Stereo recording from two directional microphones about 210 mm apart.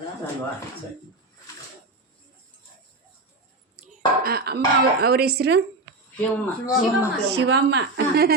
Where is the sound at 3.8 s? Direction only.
45° right (ahead or behind).